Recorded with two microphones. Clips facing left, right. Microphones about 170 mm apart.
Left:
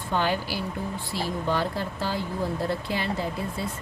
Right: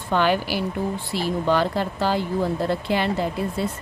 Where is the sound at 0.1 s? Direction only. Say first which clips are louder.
Right 6 dB; 80° right.